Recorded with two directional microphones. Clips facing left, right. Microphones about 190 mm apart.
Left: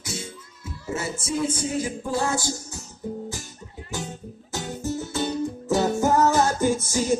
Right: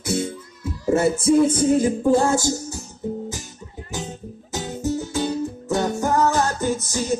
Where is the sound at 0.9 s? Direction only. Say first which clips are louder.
Right 12 dB; 60° right (ahead or behind).